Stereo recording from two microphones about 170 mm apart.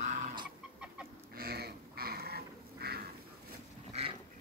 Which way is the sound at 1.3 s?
65° right (ahead or behind).